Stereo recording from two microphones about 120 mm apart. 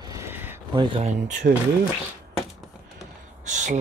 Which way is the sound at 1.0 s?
90° right.